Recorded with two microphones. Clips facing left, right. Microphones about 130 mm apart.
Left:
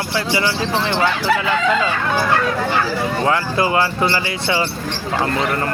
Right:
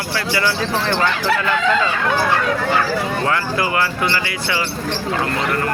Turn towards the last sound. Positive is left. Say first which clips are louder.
# left 2 dB
turn(degrees=25)  # may be behind; listen again after turning